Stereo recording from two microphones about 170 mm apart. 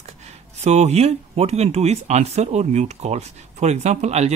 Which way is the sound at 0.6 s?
40° right (ahead or behind).